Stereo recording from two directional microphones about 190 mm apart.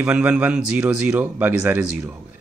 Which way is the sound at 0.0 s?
10° right (ahead or behind).